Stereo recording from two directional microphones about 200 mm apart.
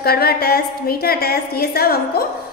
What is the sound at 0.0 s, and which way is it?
A woman's voice, 50° left (ahead or behind).